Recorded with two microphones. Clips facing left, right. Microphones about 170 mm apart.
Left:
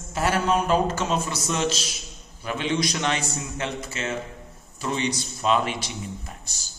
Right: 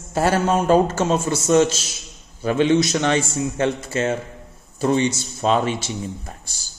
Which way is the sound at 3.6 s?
45° right (ahead or behind).